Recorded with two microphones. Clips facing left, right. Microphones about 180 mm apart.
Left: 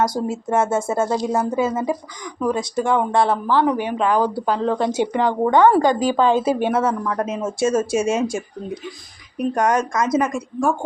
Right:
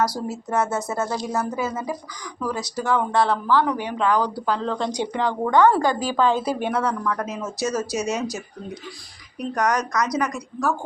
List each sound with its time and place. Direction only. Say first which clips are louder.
0.2 s a woman's voice: left 4 dB; 25° left (ahead or behind)
9.4 s a woman's voice: left 4 dB; 25° left (ahead or behind)